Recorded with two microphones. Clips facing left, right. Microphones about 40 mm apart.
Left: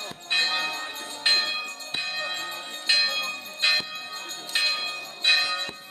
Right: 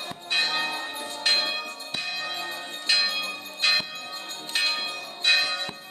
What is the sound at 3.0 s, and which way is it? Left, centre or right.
Bell, centre.